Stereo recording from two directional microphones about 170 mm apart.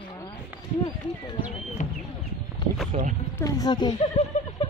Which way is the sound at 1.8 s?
45° left (ahead or behind).